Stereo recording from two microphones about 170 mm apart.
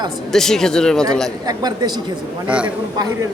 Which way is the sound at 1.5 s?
25° right (ahead or behind).